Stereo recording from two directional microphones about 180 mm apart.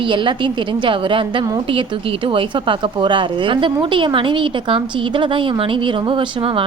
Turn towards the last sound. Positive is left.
turn(degrees=-30)  # may be behind; listen again after turning